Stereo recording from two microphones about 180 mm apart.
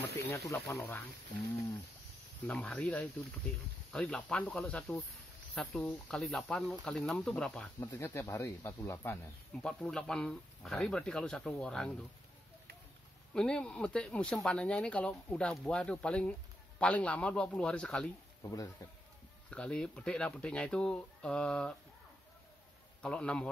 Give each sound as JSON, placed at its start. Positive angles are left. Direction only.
{"t": 0.7, "sound": "speech", "side_deg": 15}
{"t": 2.4, "sound": "speech", "side_deg": 10}
{"t": 7.8, "sound": "speech", "side_deg": 15}
{"t": 13.3, "sound": "speech", "side_deg": 5}
{"t": 18.4, "sound": "speech", "side_deg": 20}
{"t": 19.5, "sound": "speech", "side_deg": 5}
{"t": 23.0, "sound": "speech", "side_deg": 5}